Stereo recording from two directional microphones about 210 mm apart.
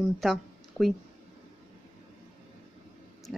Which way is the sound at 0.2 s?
Centre (ahead or behind).